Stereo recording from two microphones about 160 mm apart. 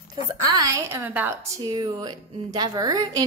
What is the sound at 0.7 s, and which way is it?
A woman's voice, 15° right (ahead or behind).